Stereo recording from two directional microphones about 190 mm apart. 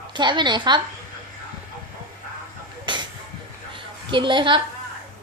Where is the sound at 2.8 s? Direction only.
25° right (ahead or behind).